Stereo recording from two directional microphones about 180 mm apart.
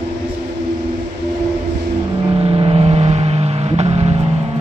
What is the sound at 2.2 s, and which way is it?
Vehicle, 30° right (ahead or behind).